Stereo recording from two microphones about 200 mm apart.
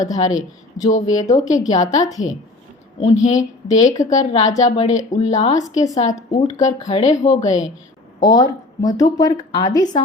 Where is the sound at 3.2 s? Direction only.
35° left (ahead or behind).